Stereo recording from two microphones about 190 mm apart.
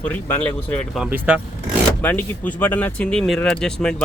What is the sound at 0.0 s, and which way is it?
Speech, 10° left (ahead or behind).